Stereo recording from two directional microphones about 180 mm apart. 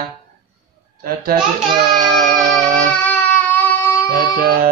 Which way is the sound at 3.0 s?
10° left (ahead or behind).